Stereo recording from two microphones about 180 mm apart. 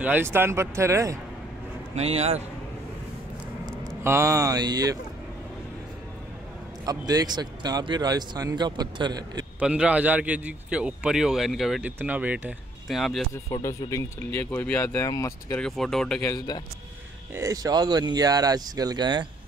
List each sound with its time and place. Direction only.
0.0 s a man's voice: 10° right (ahead or behind)
2.0 s a man's voice: 35° right (ahead or behind)
4.0 s a man's voice: 15° right (ahead or behind)
6.9 s a man's voice: 20° right (ahead or behind)
9.6 s a man's voice: 5° right (ahead or behind)
13.5 s speech: 15° left (ahead or behind)
15.5 s speech: 5° left (ahead or behind)
16.2 s speech: 20° left (ahead or behind)
17.3 s a man's voice: 15° right (ahead or behind)